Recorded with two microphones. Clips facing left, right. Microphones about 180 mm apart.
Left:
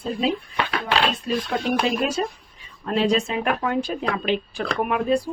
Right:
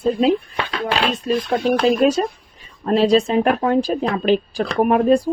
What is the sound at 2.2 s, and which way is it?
A woman's voice, 40° right (ahead or behind).